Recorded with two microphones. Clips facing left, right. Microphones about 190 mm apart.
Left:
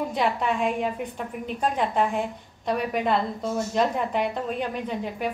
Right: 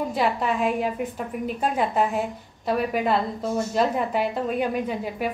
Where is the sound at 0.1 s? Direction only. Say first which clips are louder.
Right 1 dB; centre (ahead or behind).